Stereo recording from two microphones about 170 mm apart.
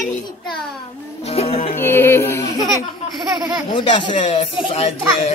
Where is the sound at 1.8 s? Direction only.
15° left (ahead or behind).